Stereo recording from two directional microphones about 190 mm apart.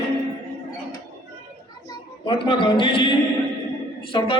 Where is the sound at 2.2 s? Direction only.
25° left (ahead or behind).